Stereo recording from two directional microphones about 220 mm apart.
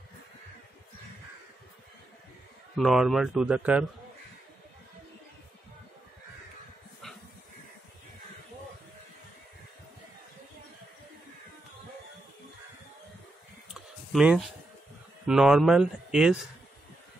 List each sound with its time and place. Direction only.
2.8 s speech: centre (ahead or behind)
14.1 s speech: centre (ahead or behind)